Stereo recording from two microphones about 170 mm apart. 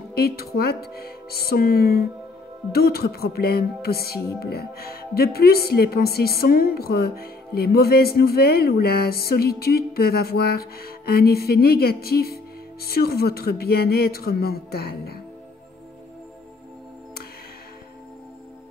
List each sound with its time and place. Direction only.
0.1 s a woman's voice: 65° left (ahead or behind)